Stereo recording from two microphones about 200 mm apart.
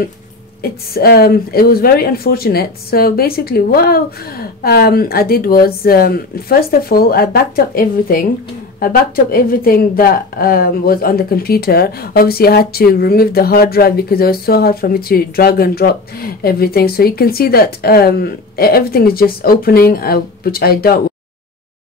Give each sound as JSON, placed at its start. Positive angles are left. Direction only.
{"t": 0.6, "sound": "speech", "side_deg": 50}